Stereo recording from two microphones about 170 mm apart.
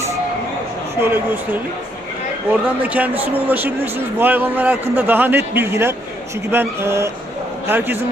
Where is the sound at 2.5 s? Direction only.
10° right (ahead or behind).